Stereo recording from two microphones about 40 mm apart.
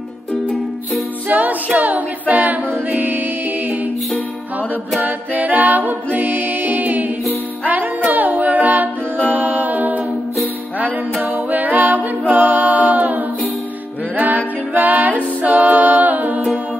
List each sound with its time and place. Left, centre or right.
1.8 s a capella: right
5.0 s music: right
8.2 s music: right
11.5 s music: right
12.4 s a capella: right
14.1 s music: right